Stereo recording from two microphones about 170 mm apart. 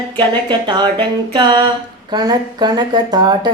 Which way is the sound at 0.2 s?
25° right (ahead or behind).